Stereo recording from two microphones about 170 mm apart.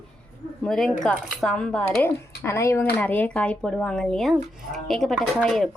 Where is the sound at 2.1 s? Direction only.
15° left (ahead or behind).